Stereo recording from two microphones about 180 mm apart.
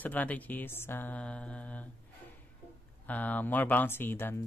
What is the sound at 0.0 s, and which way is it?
Speech, 10° left (ahead or behind).